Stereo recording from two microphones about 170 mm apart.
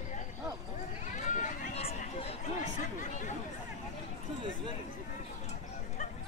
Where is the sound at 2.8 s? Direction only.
45° left (ahead or behind).